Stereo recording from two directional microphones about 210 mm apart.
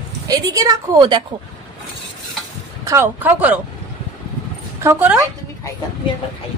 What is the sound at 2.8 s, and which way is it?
Speech, 10° right (ahead or behind).